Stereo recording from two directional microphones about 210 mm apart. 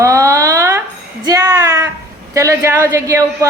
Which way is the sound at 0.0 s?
15° right (ahead or behind).